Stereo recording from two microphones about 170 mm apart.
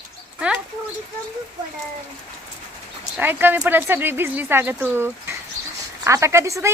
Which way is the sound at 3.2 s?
10° right (ahead or behind).